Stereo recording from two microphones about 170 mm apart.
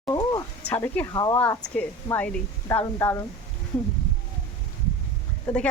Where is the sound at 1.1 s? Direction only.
25° left (ahead or behind).